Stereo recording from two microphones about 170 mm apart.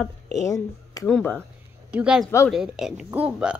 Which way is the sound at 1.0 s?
5° left (ahead or behind).